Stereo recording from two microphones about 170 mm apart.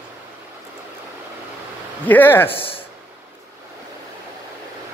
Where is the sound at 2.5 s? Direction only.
35° left (ahead or behind).